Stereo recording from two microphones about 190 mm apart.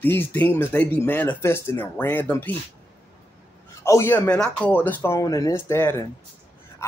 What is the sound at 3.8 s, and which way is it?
Speech, 15° left (ahead or behind).